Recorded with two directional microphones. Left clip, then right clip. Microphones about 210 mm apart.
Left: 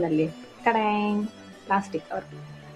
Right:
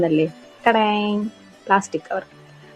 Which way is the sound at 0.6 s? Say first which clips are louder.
Right 6 dB; 30° right (ahead or behind).